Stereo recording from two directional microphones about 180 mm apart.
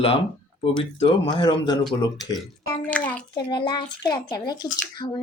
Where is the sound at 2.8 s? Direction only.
5° left (ahead or behind).